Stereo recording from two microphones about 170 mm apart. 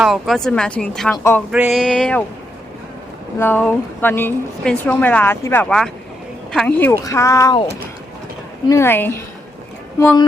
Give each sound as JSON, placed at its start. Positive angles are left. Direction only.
{"t": 0.0, "sound": "speech", "side_deg": 0}
{"t": 1.8, "sound": "speech", "side_deg": 5}
{"t": 3.3, "sound": "a woman's voice", "side_deg": 10}
{"t": 8.6, "sound": "a woman's voice", "side_deg": 15}